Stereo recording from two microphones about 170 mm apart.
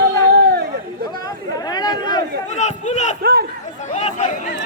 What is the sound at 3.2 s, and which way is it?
Chatter, 70° right (ahead or behind).